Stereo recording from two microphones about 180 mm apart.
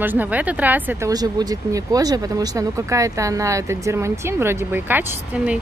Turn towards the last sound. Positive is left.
turn(degrees=-10)  # may be behind; listen again after turning